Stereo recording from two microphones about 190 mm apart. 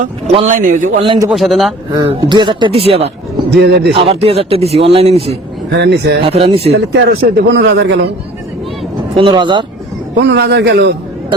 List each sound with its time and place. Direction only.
0.0 s a man's voice: 35° right (ahead or behind)
1.0 s speech: 25° right (ahead or behind)
1.3 s speech: centre (ahead or behind)
1.9 s speech: 25° right (ahead or behind)
3.5 s a man's voice: 60° right (ahead or behind)
3.9 s speech: 30° right (ahead or behind)
5.7 s a man's voice: 65° right (ahead or behind)
6.2 s speech: 30° right (ahead or behind)
6.7 s a man's voice: 60° right (ahead or behind)
9.1 s speech: 25° right (ahead or behind)
10.2 s a man's voice: 65° right (ahead or behind)